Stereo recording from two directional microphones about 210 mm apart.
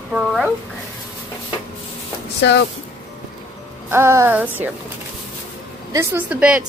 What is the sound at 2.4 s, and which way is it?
Speech, 55° left (ahead or behind).